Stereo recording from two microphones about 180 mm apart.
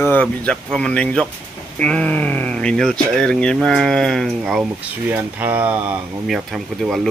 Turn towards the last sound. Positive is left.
turn(degrees=0)  # may be behind; listen again after turning